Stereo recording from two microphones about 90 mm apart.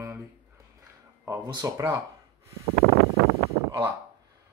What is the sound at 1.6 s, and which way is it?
Speech, 35° right (ahead or behind).